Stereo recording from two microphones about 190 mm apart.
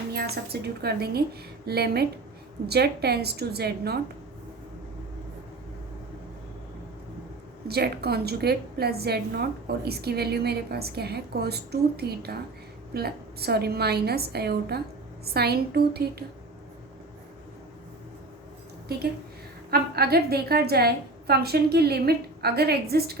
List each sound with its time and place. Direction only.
0.1 s a woman's voice: 55° right (ahead or behind)
7.7 s a woman's voice: 55° right (ahead or behind)
19.7 s a woman's voice: 55° right (ahead or behind)